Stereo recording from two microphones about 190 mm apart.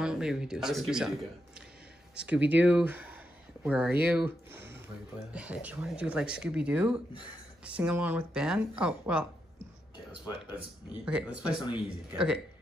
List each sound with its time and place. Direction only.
0.0 s speech: 5° right (ahead or behind)
2.1 s speech: 5° right (ahead or behind)
9.9 s speech: 25° left (ahead or behind)
11.1 s speech: 5° right (ahead or behind)